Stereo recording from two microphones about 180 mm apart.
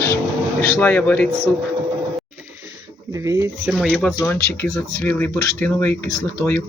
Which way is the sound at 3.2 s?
15° right (ahead or behind).